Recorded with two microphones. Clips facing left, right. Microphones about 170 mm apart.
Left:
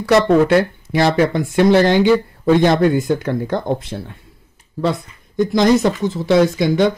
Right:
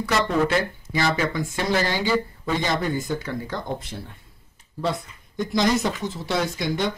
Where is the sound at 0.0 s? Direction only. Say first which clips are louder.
Left 9 dB; 65° left (ahead or behind).